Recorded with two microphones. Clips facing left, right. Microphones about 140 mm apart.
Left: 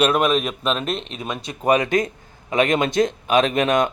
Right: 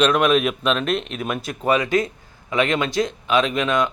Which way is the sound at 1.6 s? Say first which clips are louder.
Left 1 dB; 45° left (ahead or behind).